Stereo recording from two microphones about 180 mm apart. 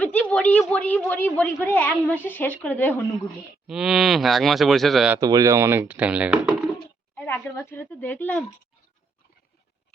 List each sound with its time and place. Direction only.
0.0 s a woman's voice: 10° left (ahead or behind)
3.7 s speech: 5° right (ahead or behind)
5.1 s speech: 20° right (ahead or behind)
7.3 s a woman's voice: 15° left (ahead or behind)